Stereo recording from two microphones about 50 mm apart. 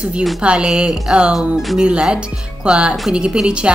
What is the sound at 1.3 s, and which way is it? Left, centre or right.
Speech, centre.